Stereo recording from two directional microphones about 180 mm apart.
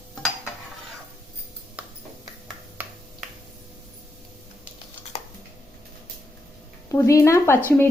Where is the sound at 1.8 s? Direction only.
10° right (ahead or behind).